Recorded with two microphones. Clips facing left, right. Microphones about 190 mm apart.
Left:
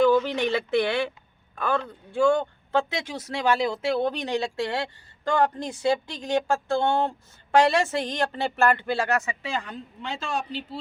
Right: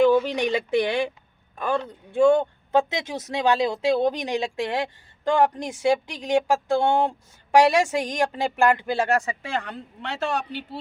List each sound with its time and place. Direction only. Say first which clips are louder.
0.0 s speech: right 2 dB; 15° right (ahead or behind)
9.0 s speech: right 3 dB; 30° right (ahead or behind)
9.4 s speech: right 1 dB; 60° right (ahead or behind)